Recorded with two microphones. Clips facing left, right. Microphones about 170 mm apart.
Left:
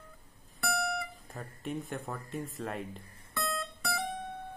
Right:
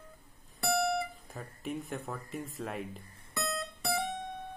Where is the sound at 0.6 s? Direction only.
25° right (ahead or behind).